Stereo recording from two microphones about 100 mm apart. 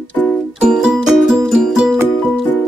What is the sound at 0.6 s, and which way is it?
Music, 5° right (ahead or behind).